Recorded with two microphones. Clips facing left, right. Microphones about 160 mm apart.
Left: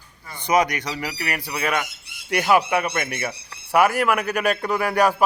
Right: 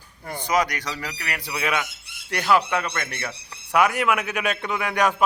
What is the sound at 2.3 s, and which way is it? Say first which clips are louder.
Speech: left 2 dB; 10° left (ahead or behind).